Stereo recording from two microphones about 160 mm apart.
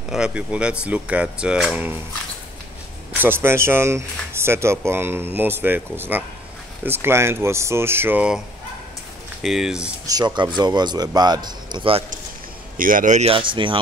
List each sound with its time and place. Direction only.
0.1 s speech: 5° right (ahead or behind)
3.2 s speech: 15° right (ahead or behind)
9.4 s speech: centre (ahead or behind)
10.0 s speech: 25° right (ahead or behind)
12.7 s speech: 60° right (ahead or behind)
13.3 s speech: 30° right (ahead or behind)